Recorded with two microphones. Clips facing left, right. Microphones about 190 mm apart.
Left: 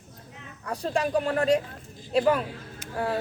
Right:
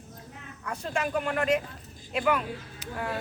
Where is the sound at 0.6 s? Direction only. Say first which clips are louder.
Left 4 dB; 35° left (ahead or behind).